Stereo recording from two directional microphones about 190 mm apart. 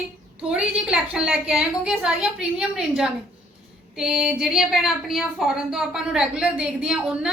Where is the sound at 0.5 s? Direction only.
5° right (ahead or behind).